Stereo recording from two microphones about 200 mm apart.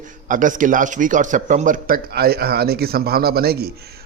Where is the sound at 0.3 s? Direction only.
40° right (ahead or behind).